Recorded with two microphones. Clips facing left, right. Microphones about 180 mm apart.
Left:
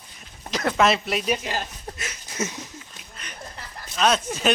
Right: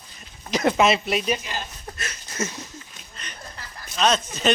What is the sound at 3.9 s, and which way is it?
Speech, 5° left (ahead or behind).